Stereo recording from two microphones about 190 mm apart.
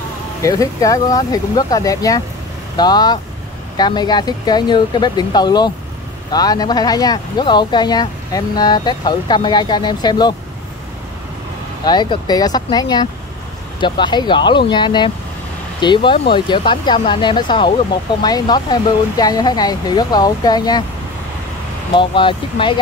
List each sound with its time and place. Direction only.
0.4 s speech: 15° left (ahead or behind)
11.8 s speech: 25° left (ahead or behind)
21.9 s speech: 25° left (ahead or behind)